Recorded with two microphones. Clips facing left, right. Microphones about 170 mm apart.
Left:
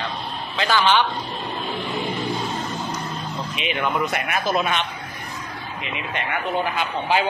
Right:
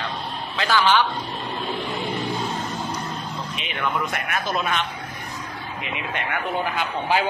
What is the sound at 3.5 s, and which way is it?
Speech, 90° left.